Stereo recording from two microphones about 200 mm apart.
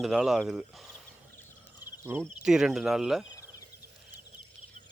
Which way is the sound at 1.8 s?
10° right (ahead or behind).